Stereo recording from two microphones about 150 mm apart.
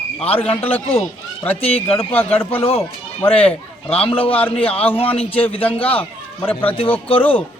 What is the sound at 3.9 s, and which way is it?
A man's voice, 40° left (ahead or behind).